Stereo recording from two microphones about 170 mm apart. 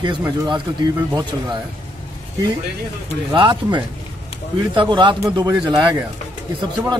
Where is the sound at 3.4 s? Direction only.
25° right (ahead or behind).